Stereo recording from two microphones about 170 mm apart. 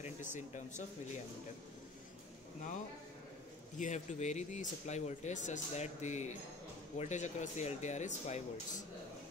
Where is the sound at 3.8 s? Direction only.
45° left (ahead or behind).